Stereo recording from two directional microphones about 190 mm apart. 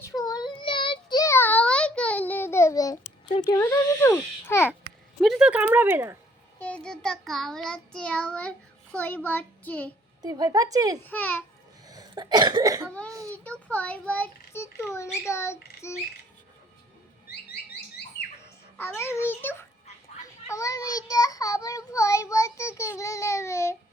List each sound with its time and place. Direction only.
0.1 s child singing: 20° left (ahead or behind)
3.3 s a child's voice: 20° left (ahead or behind)
5.2 s speech: centre (ahead or behind)
6.6 s child singing: 5° left (ahead or behind)
10.2 s speech: 20° right (ahead or behind)
11.0 s child singing: 10° left (ahead or behind)
11.9 s cough: 20° right (ahead or behind)
13.1 s speech: 15° right (ahead or behind)
13.3 s child singing: 5° left (ahead or behind)
18.8 s child singing: 15° left (ahead or behind)